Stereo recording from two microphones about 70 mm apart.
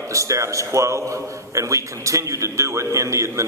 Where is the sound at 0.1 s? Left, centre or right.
Right.